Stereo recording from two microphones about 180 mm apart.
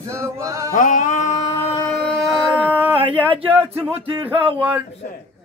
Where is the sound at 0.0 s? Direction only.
15° right (ahead or behind).